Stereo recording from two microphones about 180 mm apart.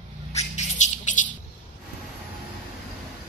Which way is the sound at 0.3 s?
35° left (ahead or behind).